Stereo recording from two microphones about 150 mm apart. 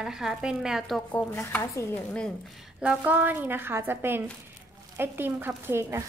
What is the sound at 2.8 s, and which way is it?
A woman's voice, 10° right (ahead or behind).